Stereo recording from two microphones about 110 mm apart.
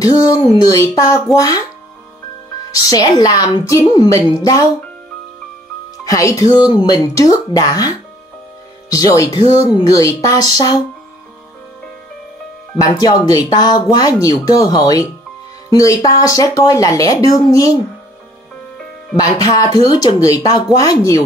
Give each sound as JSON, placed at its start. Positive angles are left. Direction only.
{"t": 0.0, "sound": "speech", "side_deg": 35}
{"t": 2.7, "sound": "speech", "side_deg": 35}
{"t": 6.0, "sound": "speech", "side_deg": 30}
{"t": 8.9, "sound": "speech", "side_deg": 30}
{"t": 12.8, "sound": "speech", "side_deg": 35}
{"t": 19.1, "sound": "speech", "side_deg": 35}